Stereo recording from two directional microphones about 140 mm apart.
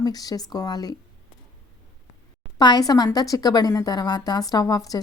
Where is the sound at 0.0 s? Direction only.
25° left (ahead or behind).